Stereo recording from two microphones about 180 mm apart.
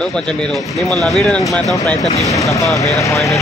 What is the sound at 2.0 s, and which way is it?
Speech, 40° left (ahead or behind).